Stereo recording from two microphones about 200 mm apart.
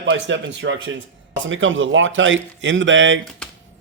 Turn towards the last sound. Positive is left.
turn(degrees=5)  # may be behind; listen again after turning